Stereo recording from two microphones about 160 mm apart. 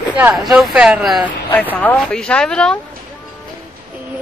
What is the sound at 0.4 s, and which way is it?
Speech, centre (ahead or behind).